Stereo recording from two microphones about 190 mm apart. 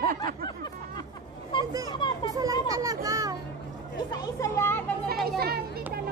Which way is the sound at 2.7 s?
20° right (ahead or behind).